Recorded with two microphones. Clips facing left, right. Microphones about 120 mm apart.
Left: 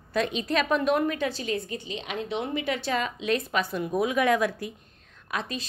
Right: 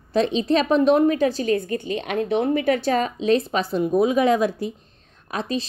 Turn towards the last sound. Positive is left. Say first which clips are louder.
# right 6 dB
turn(degrees=-35)  # may be behind; listen again after turning